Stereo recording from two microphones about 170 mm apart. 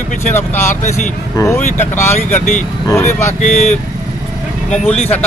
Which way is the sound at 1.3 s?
20° left (ahead or behind).